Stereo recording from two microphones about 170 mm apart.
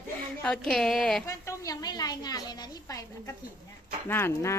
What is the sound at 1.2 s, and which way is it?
A woman's voice, 20° left (ahead or behind).